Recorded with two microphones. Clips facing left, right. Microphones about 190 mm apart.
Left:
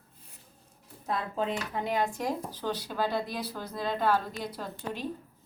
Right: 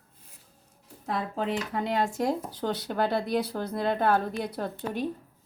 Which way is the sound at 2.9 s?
60° right (ahead or behind).